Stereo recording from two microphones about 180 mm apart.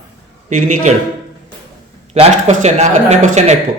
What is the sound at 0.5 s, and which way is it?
Speech, 45° right (ahead or behind).